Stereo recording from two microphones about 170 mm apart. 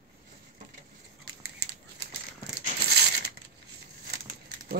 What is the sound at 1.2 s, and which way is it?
Scissors, 75° right (ahead or behind).